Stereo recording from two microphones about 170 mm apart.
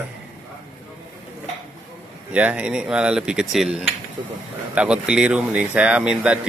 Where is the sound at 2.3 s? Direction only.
10° right (ahead or behind).